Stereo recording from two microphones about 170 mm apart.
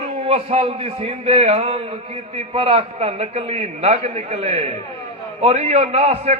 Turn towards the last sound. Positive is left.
turn(degrees=-40)  # may be behind; listen again after turning